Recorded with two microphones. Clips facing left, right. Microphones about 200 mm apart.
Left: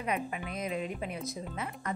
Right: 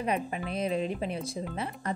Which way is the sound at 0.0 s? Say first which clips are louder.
Right 3 dB; 30° right (ahead or behind).